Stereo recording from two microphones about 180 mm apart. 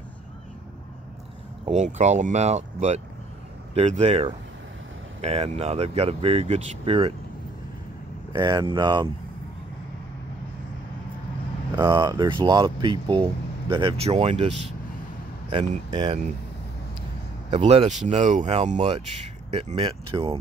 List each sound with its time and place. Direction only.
1.7 s speech: 40° right (ahead or behind)
8.3 s speech: 25° right (ahead or behind)
11.7 s speech: 25° right (ahead or behind)
15.5 s speech: 40° right (ahead or behind)
15.9 s speech: 25° right (ahead or behind)
17.5 s speech: 30° right (ahead or behind)